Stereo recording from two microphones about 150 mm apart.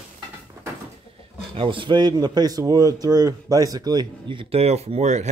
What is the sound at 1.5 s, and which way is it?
Speech, 35° right (ahead or behind).